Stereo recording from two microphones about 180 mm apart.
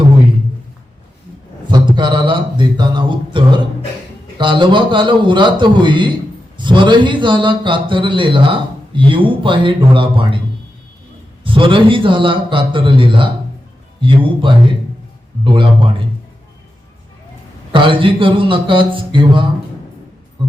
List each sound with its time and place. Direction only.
1.6 s a sound: 25° right (ahead or behind)
4.4 s a man's voice: 25° right (ahead or behind)
11.4 s a man's voice: 30° right (ahead or behind)
17.7 s a man's voice: 30° right (ahead or behind)